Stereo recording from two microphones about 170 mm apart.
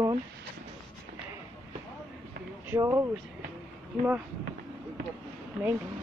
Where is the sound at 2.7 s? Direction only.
15° right (ahead or behind).